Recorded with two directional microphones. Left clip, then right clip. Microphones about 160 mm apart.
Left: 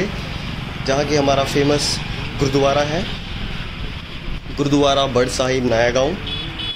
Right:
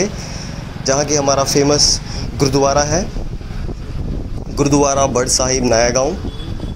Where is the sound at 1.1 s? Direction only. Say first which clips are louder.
Even; 5° left (ahead or behind).